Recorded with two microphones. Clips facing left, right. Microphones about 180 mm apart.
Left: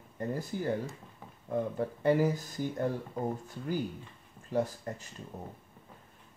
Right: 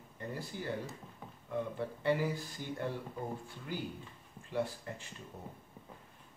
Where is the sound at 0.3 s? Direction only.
45° left (ahead or behind).